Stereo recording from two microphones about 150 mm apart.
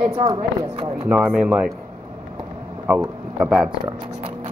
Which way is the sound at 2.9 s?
10° right (ahead or behind).